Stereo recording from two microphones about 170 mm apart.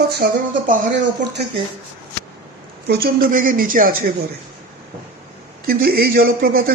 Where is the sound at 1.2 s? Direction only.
85° right.